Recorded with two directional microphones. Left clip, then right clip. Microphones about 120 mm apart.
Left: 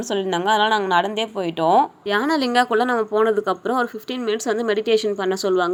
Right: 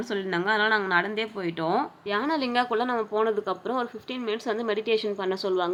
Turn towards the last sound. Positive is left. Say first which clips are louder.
# left 6 dB
turn(degrees=45)  # may be behind; listen again after turning